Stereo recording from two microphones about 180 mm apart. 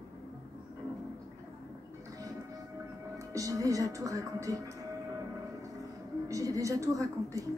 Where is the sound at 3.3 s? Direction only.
20° right (ahead or behind).